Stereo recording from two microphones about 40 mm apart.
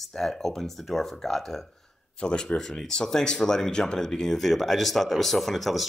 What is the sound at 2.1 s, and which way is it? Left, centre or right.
Speech, left.